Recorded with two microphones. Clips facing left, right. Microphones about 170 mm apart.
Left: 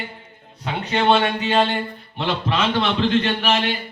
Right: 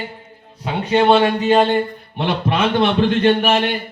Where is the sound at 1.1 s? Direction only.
35° right (ahead or behind); by 3.8 s 55° right (ahead or behind).